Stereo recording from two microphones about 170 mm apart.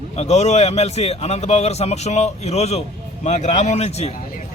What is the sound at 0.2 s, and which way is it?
A man's voice, 40° left (ahead or behind).